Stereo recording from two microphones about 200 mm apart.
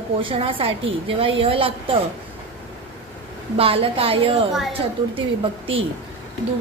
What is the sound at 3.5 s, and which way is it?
Speech, 30° right (ahead or behind).